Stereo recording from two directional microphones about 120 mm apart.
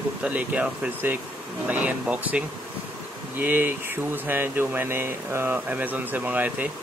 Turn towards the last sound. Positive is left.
turn(degrees=-15)  # may be behind; listen again after turning